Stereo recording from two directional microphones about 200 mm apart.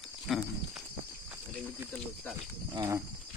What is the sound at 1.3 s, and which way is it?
Snake, 10° right (ahead or behind).